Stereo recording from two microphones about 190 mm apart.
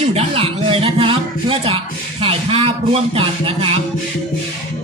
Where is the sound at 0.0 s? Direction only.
35° right (ahead or behind).